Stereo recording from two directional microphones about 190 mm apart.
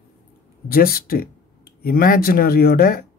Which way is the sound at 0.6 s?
50° left (ahead or behind).